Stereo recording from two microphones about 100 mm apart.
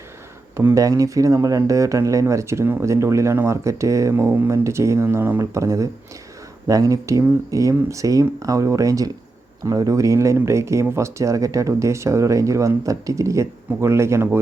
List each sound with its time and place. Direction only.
0.5 s speech: 30° right (ahead or behind)
4.1 s speech: 20° right (ahead or behind)
5.0 s speech: 20° right (ahead or behind)